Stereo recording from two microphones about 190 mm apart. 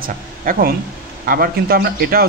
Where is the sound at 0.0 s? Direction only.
50° right (ahead or behind).